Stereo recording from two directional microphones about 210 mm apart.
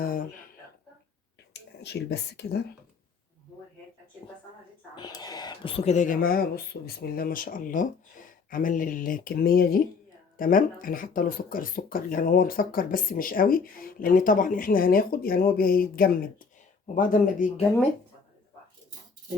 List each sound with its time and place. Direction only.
0.0 s a sound: 40° left (ahead or behind)
1.8 s speech: 50° left (ahead or behind)
4.9 s speech: 20° left (ahead or behind); by 17.5 s 40° left (ahead or behind)